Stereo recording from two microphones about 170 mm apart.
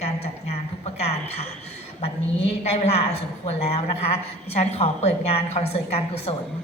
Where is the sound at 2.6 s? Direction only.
40° left (ahead or behind).